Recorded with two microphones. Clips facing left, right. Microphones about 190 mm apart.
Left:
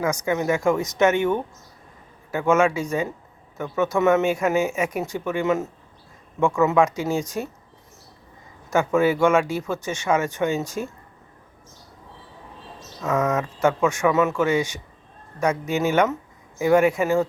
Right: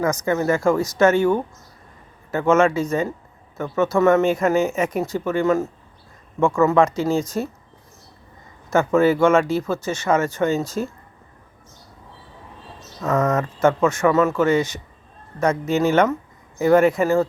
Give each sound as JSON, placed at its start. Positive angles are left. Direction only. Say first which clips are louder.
{"t": 0.0, "sound": "speech", "louder": "right 3 dB", "side_deg": 10}
{"t": 2.3, "sound": "speech", "louder": "right 3 dB", "side_deg": 10}
{"t": 6.7, "sound": "speech", "louder": "right 3 dB", "side_deg": 15}
{"t": 9.0, "sound": "speech", "louder": "right 3 dB", "side_deg": 15}
{"t": 13.0, "sound": "speech", "louder": "right 2 dB", "side_deg": 0}
{"t": 14.1, "sound": "speech", "louder": "right 3 dB", "side_deg": 0}
{"t": 14.3, "sound": "speech", "louder": "right 3 dB", "side_deg": 10}